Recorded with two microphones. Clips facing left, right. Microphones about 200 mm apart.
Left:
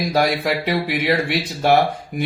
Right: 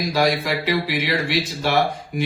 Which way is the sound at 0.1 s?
60° left (ahead or behind).